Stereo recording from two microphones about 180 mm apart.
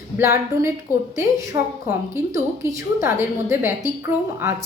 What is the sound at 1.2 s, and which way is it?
Speech, 15° right (ahead or behind).